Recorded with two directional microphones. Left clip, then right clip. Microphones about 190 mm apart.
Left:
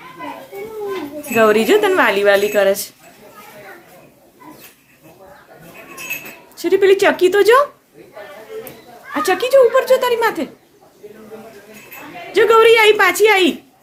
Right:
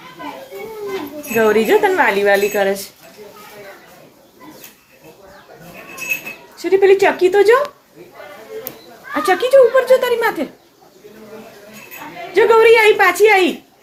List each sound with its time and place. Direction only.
1.4 s speech: 35° left (ahead or behind)
6.7 s speech: 30° left (ahead or behind)
9.1 s speech: 15° left (ahead or behind)
12.4 s speech: 20° left (ahead or behind)